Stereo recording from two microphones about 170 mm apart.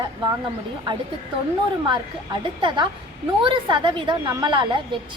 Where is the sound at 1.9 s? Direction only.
30° right (ahead or behind).